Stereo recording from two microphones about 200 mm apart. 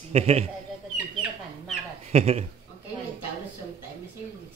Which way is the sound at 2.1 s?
30° right (ahead or behind).